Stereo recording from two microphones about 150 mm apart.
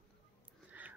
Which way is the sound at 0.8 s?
10° right (ahead or behind).